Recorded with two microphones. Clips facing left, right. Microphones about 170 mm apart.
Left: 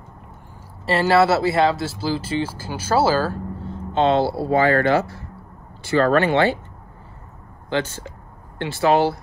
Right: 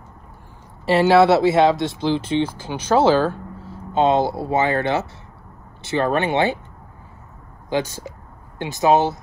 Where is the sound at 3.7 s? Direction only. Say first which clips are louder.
Right 1 dB; 10° right (ahead or behind).